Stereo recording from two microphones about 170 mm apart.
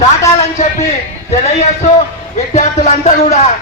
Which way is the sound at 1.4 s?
40° left (ahead or behind).